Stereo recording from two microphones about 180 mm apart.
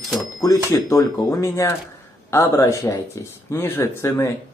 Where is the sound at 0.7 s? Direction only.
20° left (ahead or behind).